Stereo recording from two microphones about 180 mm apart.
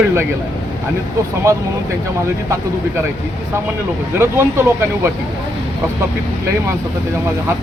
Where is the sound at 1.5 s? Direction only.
15° right (ahead or behind).